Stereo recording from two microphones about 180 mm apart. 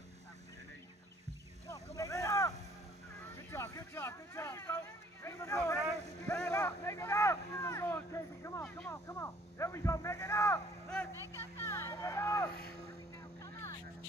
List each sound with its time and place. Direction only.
1.7 s vehicle: 20° left (ahead or behind)
5.2 s a sound: 15° left (ahead or behind)
13.4 s vehicle: 15° left (ahead or behind)